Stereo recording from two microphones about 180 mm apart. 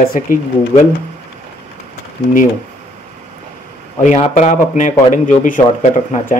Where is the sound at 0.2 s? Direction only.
45° left (ahead or behind).